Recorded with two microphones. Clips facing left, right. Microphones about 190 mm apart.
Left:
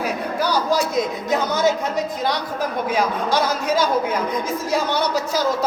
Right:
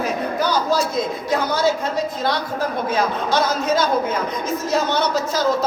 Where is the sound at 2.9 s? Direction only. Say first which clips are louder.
Even; 10° left (ahead or behind).